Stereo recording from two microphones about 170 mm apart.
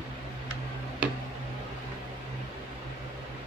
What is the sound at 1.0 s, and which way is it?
Tick-tock, 5° right (ahead or behind).